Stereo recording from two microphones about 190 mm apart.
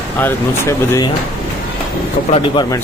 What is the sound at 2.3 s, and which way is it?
Speech, 25° left (ahead or behind).